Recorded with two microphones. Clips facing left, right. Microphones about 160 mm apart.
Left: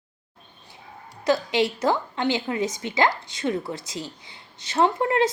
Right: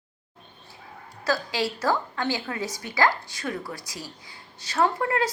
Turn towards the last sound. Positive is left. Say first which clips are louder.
# left 3 dB
turn(degrees=25)  # may be behind; listen again after turning